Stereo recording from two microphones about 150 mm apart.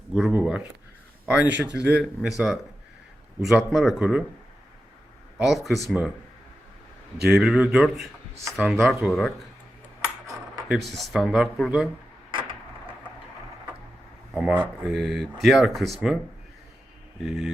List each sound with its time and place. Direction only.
0.1 s speech: 5° right (ahead or behind)
5.4 s speech: centre (ahead or behind)
7.3 s speech: 5° right (ahead or behind)
10.7 s speech: centre (ahead or behind)
12.3 s a sound: 35° right (ahead or behind)
14.3 s speech: 10° right (ahead or behind)
17.2 s speech: 5° right (ahead or behind)